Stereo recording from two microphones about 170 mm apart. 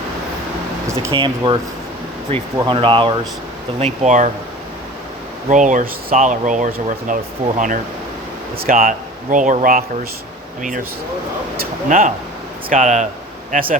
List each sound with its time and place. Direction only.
1.1 s speech: 30° right (ahead or behind)
3.8 s speech: 40° right (ahead or behind)
5.5 s speech: 45° right (ahead or behind)
8.5 s speech: 55° right (ahead or behind)
13.5 s speech: 55° right (ahead or behind)